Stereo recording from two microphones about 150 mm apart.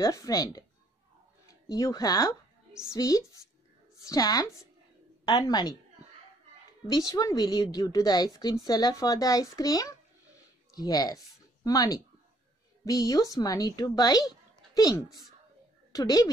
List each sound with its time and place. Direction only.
0.0 s a woman's voice: 20° left (ahead or behind)
1.7 s a woman's voice: 25° left (ahead or behind)
7.1 s a woman's voice: 25° left (ahead or behind)